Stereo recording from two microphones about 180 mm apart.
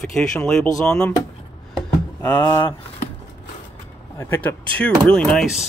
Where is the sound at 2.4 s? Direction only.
25° left (ahead or behind).